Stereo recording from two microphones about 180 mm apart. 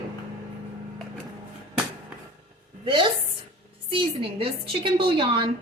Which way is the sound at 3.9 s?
30° right (ahead or behind).